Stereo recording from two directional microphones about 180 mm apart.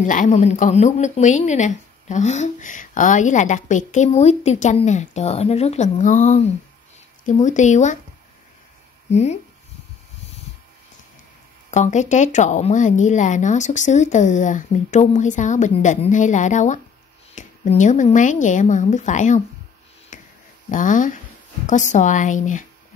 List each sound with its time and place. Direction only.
0.0 s speech: 45° left (ahead or behind)
9.1 s speech: 40° left (ahead or behind)
11.7 s a woman's voice: 40° left (ahead or behind)
20.1 s a sound: 45° left (ahead or behind)
20.7 s a woman's voice: 45° left (ahead or behind)